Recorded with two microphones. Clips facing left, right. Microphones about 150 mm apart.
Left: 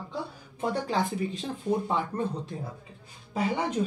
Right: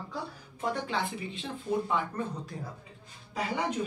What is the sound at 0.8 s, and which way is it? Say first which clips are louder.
Speech: left 5 dB; 40° left (ahead or behind).